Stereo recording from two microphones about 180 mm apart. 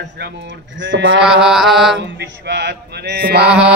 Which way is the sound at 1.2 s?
5° right (ahead or behind).